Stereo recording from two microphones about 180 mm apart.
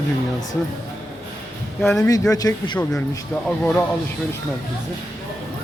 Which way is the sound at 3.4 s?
5° left (ahead or behind).